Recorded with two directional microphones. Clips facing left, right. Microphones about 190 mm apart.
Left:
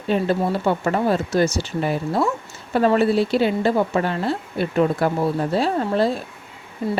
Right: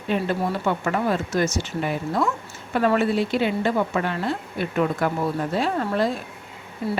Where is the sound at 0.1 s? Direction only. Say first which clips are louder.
Left 4 dB; 35° left (ahead or behind).